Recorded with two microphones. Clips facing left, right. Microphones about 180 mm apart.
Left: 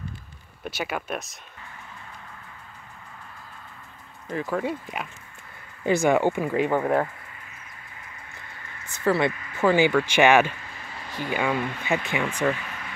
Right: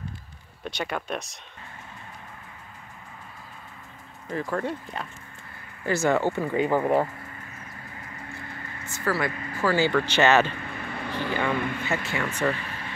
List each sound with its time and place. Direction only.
0.7 s speech: 5° left (ahead or behind)
4.3 s speech: centre (ahead or behind)
6.5 s speech: centre (ahead or behind)
8.9 s speech: 25° left (ahead or behind)
10.7 s a sound: 60° right (ahead or behind)
11.1 s speech: 10° left (ahead or behind)